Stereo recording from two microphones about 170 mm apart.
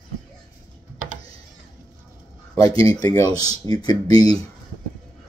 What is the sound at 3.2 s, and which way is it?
Speech, 20° left (ahead or behind).